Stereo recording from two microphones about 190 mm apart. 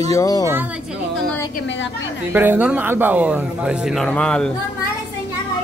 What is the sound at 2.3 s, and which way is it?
A man's voice, 10° right (ahead or behind).